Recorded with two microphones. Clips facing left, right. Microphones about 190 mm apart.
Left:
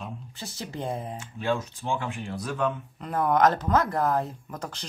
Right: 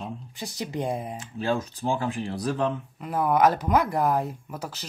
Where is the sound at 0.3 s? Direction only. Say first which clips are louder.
Right 4 dB; 15° right (ahead or behind).